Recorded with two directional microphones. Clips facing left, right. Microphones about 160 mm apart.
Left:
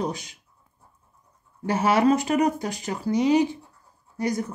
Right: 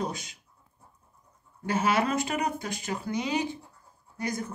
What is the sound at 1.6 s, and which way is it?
Speech, 35° left (ahead or behind).